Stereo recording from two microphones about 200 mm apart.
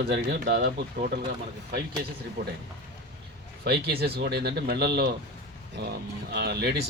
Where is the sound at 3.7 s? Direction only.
50° right (ahead or behind).